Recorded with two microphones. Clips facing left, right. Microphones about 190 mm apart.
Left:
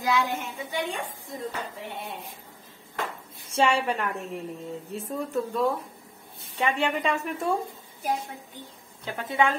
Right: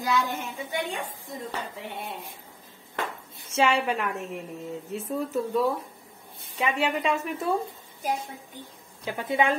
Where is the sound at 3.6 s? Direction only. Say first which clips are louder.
Even; centre (ahead or behind).